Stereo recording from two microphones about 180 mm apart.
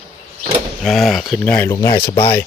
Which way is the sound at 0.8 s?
Centre (ahead or behind).